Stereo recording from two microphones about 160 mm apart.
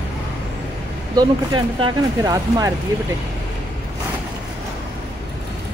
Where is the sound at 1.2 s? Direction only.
25° right (ahead or behind).